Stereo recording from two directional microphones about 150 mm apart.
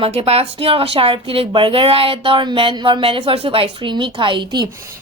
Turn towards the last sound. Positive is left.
turn(degrees=-30)  # may be behind; listen again after turning